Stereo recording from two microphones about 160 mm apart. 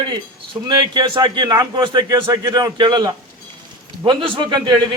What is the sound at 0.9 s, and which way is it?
A man's voice, 30° right (ahead or behind).